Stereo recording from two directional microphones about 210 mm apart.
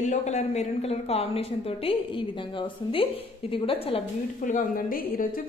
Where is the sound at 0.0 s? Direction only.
35° left (ahead or behind).